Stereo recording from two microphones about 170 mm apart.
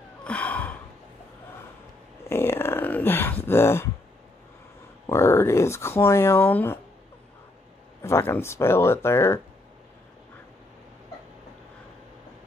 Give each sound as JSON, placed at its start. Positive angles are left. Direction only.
{"t": 0.2, "sound": "gasp", "side_deg": 5}
{"t": 2.2, "sound": "a sound", "side_deg": 15}
{"t": 3.4, "sound": "speech", "side_deg": 15}
{"t": 5.0, "sound": "speech", "side_deg": 15}
{"t": 8.0, "sound": "speech", "side_deg": 15}